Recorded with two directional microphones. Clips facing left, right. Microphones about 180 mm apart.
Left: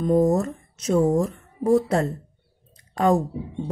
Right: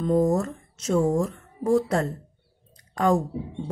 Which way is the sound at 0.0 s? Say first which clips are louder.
Left 2 dB; 20° left (ahead or behind).